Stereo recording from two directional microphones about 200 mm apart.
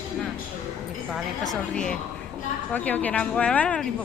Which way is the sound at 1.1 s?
Centre (ahead or behind).